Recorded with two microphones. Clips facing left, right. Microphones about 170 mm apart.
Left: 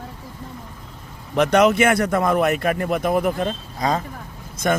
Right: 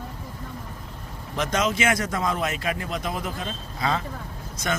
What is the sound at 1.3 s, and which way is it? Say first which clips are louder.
Speech: left 9 dB; 65° left (ahead or behind).